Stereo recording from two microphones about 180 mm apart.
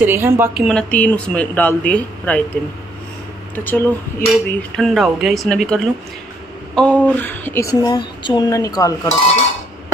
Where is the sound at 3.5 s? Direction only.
10° left (ahead or behind).